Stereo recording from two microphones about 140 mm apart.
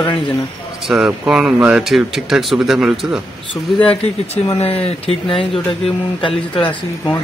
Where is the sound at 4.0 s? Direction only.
45° left (ahead or behind).